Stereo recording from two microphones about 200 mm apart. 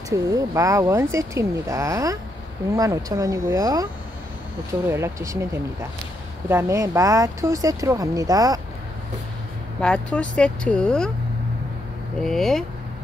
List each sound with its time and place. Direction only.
0.1 s speech: 15° right (ahead or behind)
9.8 s speech: 5° left (ahead or behind)
12.2 s speech: centre (ahead or behind)